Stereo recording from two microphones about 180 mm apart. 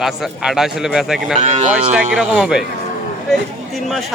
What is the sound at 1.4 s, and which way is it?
Cattle, 40° right (ahead or behind).